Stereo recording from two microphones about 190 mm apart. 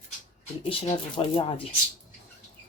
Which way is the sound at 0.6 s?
30° left (ahead or behind).